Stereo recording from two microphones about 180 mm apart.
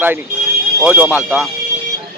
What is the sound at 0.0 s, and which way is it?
Speech, 10° right (ahead or behind).